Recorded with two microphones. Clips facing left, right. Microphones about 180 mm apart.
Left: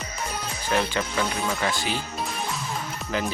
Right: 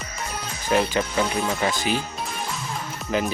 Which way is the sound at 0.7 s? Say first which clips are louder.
Right 4 dB; 20° right (ahead or behind).